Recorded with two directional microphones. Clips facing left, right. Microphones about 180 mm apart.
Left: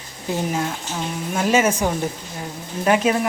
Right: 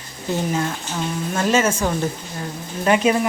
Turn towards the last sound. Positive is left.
turn(degrees=0)  # may be behind; listen again after turning